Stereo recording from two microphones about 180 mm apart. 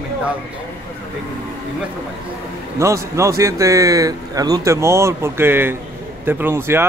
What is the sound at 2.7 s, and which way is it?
Speech, 15° right (ahead or behind).